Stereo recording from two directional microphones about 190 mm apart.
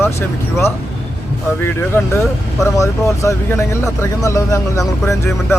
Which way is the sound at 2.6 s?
15° left (ahead or behind).